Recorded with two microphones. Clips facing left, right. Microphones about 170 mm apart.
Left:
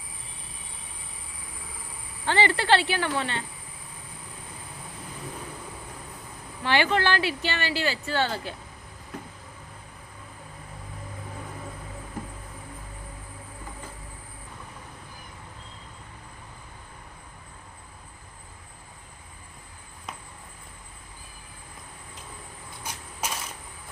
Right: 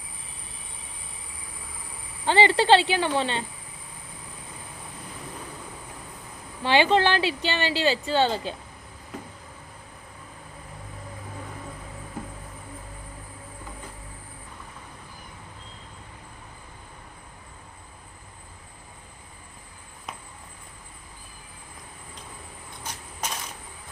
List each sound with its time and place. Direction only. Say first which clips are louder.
2.2 s speech: right 4 dB; 15° right (ahead or behind)
6.6 s speech: right 4 dB; 20° right (ahead or behind)
22.8 s vehicle: even; 10° left (ahead or behind)